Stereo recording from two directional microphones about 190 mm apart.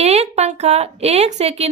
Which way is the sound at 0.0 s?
35° right (ahead or behind).